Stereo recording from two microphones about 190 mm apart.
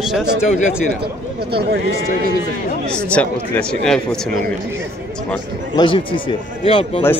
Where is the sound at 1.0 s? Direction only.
60° right (ahead or behind).